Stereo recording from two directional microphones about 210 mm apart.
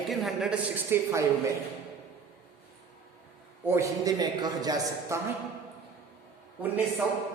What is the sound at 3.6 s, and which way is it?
A man's voice, 15° right (ahead or behind).